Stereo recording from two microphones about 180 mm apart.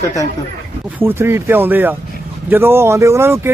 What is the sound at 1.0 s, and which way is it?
Speech, 15° right (ahead or behind).